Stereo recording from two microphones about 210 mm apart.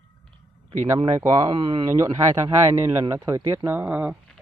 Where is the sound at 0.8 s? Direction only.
20° right (ahead or behind).